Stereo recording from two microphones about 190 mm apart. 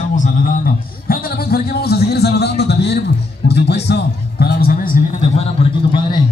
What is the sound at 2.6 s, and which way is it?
Music, 60° left (ahead or behind).